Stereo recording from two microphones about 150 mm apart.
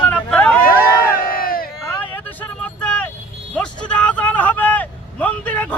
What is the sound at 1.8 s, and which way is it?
Vehicle, 20° left (ahead or behind).